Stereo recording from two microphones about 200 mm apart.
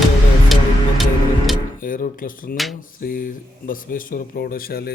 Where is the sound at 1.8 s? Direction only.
45° left (ahead or behind).